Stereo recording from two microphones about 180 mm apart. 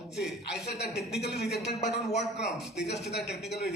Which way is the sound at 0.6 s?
70° left (ahead or behind).